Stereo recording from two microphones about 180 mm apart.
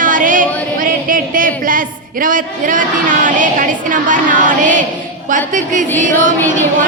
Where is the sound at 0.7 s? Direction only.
50° right (ahead or behind).